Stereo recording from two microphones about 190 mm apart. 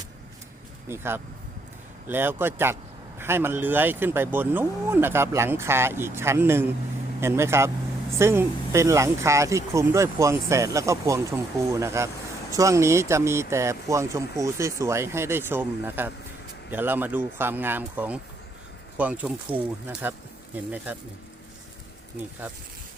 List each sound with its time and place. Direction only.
0.9 s speech: 10° right (ahead or behind)